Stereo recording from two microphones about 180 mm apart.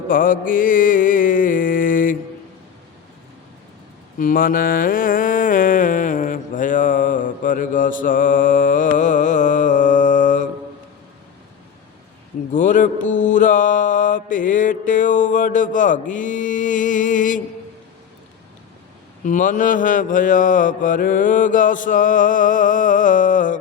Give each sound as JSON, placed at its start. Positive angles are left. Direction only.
{"t": 0.1, "sound": "mantra", "side_deg": 50}
{"t": 4.2, "sound": "mantra", "side_deg": 50}
{"t": 12.5, "sound": "mantra", "side_deg": 45}
{"t": 19.2, "sound": "mantra", "side_deg": 45}